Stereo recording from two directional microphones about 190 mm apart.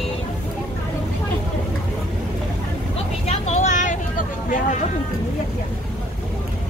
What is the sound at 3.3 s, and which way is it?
Vehicle, 40° left (ahead or behind).